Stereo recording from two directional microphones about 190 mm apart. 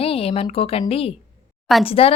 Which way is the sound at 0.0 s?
30° left (ahead or behind).